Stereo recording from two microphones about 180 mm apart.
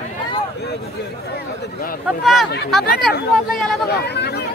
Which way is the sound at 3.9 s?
65° left (ahead or behind).